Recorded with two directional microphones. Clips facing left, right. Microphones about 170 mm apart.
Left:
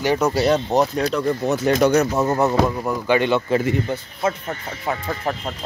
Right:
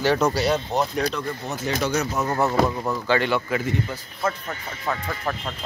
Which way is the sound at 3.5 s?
30° left (ahead or behind).